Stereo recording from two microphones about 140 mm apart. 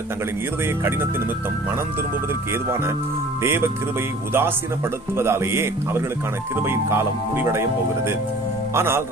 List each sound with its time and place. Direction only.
3.4 s speech: 15° right (ahead or behind)